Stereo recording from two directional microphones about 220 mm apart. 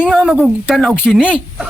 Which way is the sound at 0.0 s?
Centre (ahead or behind).